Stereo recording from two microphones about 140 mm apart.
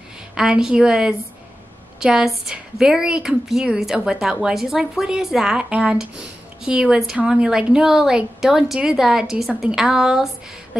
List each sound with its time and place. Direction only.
0.3 s a woman's voice: 5° right (ahead or behind)